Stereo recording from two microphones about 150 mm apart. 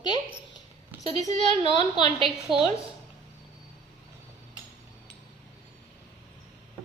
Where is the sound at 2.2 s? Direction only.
5° right (ahead or behind).